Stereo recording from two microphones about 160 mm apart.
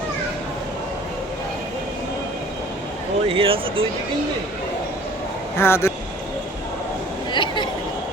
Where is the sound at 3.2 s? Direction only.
35° right (ahead or behind).